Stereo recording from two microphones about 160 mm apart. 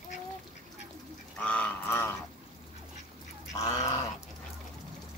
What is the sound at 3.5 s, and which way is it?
Goose, 20° left (ahead or behind).